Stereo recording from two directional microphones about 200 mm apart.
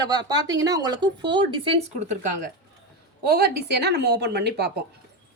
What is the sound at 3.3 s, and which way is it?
A woman's voice, 50° right (ahead or behind).